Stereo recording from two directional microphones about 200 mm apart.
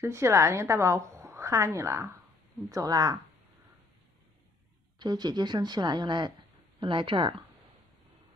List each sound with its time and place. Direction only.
0.0 s a woman's voice: 15° right (ahead or behind)
4.9 s a woman's voice: 20° right (ahead or behind)